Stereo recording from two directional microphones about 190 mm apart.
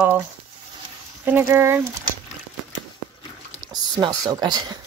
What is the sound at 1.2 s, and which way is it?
Speech, 15° right (ahead or behind).